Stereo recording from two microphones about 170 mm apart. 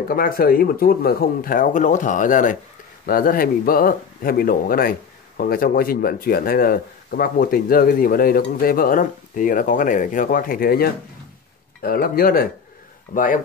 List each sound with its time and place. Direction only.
0.1 s speech: 60° left (ahead or behind)